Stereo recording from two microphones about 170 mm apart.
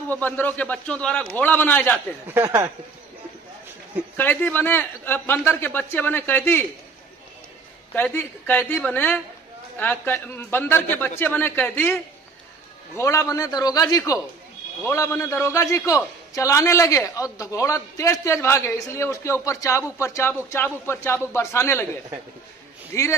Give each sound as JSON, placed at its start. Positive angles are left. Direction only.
{"t": 0.1, "sound": "a man's voice", "side_deg": 10}
{"t": 2.2, "sound": "speech", "side_deg": -15}
{"t": 4.2, "sound": "a man's voice", "side_deg": 10}
{"t": 7.9, "sound": "a man's voice", "side_deg": 10}
{"t": 22.9, "sound": "a man's voice", "side_deg": 15}